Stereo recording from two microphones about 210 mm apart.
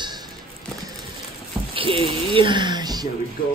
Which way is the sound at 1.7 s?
25° right (ahead or behind).